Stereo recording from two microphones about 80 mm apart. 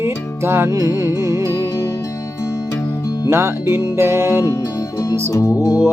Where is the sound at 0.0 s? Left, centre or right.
Right.